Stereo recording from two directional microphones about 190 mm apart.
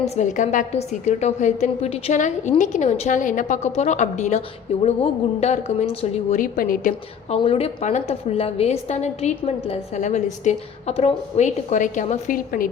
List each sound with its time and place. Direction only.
0.0 s a woman's voice: 40° left (ahead or behind)
6.3 s a woman's voice: 45° left (ahead or behind)
7.3 s a woman's voice: 30° left (ahead or behind); by 12.6 s 45° left (ahead or behind)